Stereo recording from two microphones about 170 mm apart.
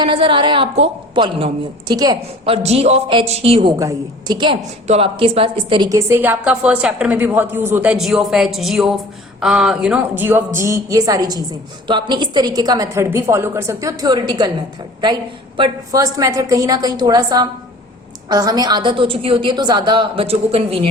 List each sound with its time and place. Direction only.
0.0 s a woman's voice: 30° right (ahead or behind)
2.5 s speech: 35° right (ahead or behind)
3.8 s a woman's voice: 20° right (ahead or behind)
5.9 s a woman's voice: 15° right (ahead or behind); by 20.8 s 35° right (ahead or behind)